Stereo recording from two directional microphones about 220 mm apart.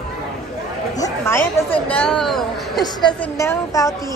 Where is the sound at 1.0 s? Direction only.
10° left (ahead or behind).